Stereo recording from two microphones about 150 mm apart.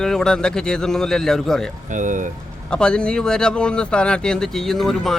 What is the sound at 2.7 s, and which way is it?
Speech, 5° left (ahead or behind).